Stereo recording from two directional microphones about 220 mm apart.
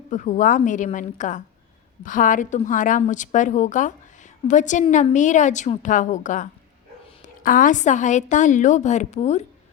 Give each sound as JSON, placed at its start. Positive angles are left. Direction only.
{"t": 0.1, "sound": "a woman's voice", "side_deg": 35}